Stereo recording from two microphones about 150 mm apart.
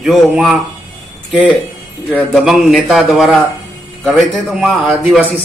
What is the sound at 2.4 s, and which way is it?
A man's voice, 5° right (ahead or behind).